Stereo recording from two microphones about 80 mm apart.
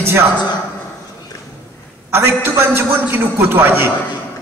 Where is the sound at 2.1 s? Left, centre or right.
Right.